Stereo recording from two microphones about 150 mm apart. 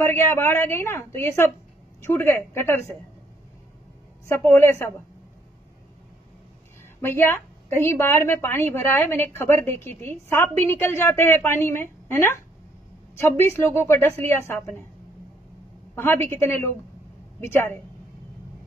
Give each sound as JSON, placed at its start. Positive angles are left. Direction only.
{"t": 0.0, "sound": "a woman's voice", "side_deg": 15}
{"t": 4.3, "sound": "a woman's voice", "side_deg": 15}
{"t": 7.0, "sound": "a woman's voice", "side_deg": 15}
{"t": 15.9, "sound": "a woman's voice", "side_deg": 15}